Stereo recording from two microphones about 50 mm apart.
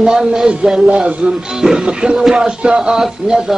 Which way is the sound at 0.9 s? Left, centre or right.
Right.